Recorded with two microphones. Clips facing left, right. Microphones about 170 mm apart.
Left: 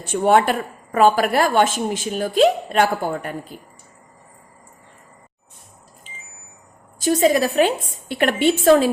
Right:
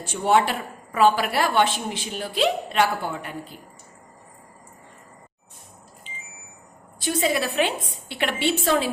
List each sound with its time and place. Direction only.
0.0 s a woman's voice: 55° left (ahead or behind)
7.0 s a woman's voice: 40° left (ahead or behind)